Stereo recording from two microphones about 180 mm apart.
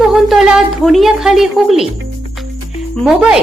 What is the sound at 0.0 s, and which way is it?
A woman's voice, centre (ahead or behind).